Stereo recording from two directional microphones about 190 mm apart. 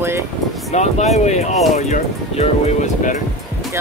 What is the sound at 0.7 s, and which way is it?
Speech, 35° left (ahead or behind).